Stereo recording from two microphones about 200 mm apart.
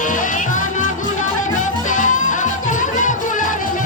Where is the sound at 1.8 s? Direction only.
40° left (ahead or behind).